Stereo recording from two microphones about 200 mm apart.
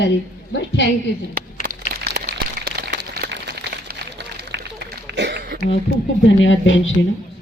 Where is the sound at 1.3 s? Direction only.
45° right (ahead or behind).